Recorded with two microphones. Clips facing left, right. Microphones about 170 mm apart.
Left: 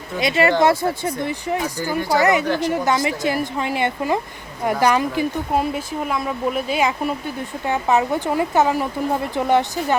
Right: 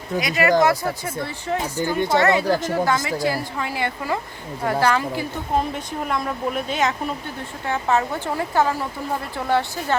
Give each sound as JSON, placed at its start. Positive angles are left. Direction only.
{"t": 0.2, "sound": "a woman's voice", "side_deg": 25}
{"t": 1.2, "sound": "speech", "side_deg": 15}
{"t": 2.0, "sound": "speech", "side_deg": -25}
{"t": 2.4, "sound": "speech", "side_deg": -40}
{"t": 2.8, "sound": "a woman's voice", "side_deg": 20}